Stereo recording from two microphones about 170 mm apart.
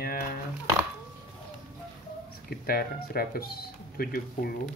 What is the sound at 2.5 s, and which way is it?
Speech, 60° left (ahead or behind).